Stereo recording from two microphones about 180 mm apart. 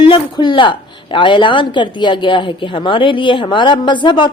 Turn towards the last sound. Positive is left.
turn(degrees=25)  # may be behind; listen again after turning